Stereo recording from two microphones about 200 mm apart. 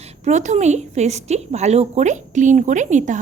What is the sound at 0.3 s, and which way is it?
A woman's voice, 35° right (ahead or behind).